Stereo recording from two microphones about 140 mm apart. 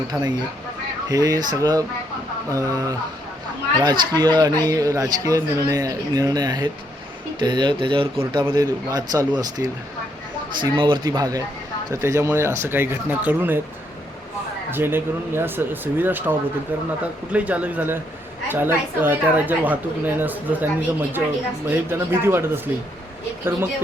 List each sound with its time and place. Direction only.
0.1 s speech: 30° right (ahead or behind); by 13.6 s 15° right (ahead or behind)
14.7 s speech: 15° right (ahead or behind)
21.7 s speech: 15° right (ahead or behind)